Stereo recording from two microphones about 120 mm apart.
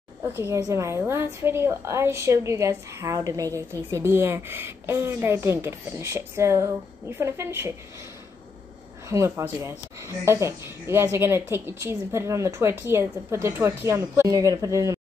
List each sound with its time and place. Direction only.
0.2 s a woman's voice: 20° right (ahead or behind)
9.1 s a woman's voice: 20° right (ahead or behind)